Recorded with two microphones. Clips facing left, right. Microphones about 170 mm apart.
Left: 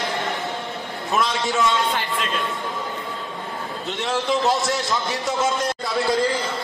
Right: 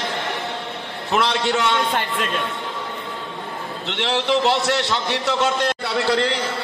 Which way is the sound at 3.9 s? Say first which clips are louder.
Right 2 dB; 70° right (ahead or behind).